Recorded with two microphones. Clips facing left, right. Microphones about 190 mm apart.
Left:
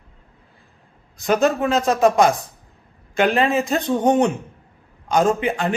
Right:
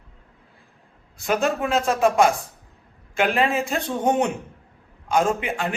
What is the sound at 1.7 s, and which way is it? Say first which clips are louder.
Speech: left 3 dB; 40° left (ahead or behind).